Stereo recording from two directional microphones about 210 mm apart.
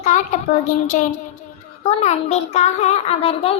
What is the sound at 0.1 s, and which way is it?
Speech, 35° left (ahead or behind).